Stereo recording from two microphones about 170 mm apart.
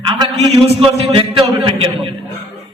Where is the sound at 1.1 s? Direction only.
30° right (ahead or behind).